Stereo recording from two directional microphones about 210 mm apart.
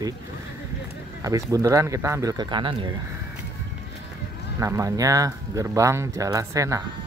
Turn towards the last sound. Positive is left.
turn(degrees=-15)  # may be behind; listen again after turning